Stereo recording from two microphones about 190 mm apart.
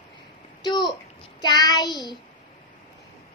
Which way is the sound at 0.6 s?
20° left (ahead or behind).